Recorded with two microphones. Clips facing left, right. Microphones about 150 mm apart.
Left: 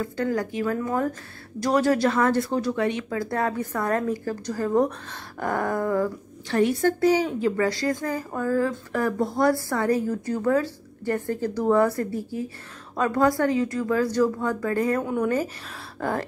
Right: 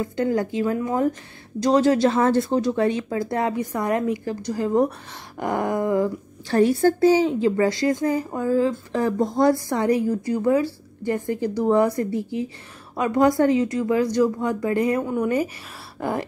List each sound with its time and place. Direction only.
0.0 s a woman's voice: 25° right (ahead or behind)
6.5 s a woman's voice: 35° right (ahead or behind); by 16.3 s 15° right (ahead or behind)